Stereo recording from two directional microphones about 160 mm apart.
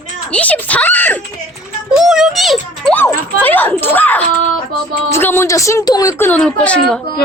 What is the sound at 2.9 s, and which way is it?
A woman's voice, 10° left (ahead or behind).